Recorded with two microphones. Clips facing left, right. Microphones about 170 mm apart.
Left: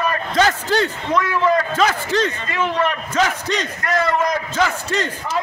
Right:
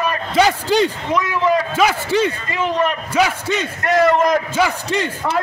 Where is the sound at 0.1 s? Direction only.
10° right (ahead or behind).